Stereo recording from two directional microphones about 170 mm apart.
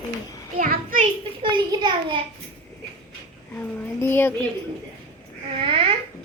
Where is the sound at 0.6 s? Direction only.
55° right (ahead or behind).